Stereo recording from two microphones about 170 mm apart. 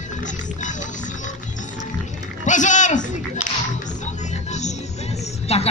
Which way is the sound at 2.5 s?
45° left (ahead or behind).